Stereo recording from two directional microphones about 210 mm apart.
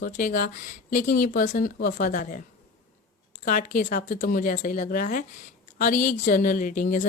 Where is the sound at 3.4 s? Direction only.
40° left (ahead or behind).